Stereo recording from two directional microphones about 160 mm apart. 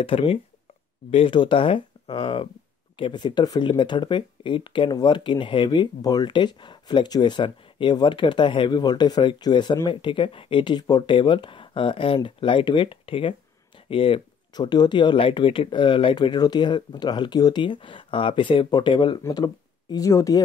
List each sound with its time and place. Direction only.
0.0 s speech: 35° left (ahead or behind); by 20.4 s 20° left (ahead or behind)